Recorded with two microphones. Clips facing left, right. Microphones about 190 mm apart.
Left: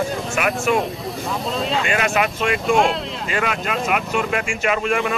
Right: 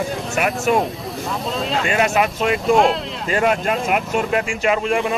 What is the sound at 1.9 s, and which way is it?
Speech, 40° right (ahead or behind).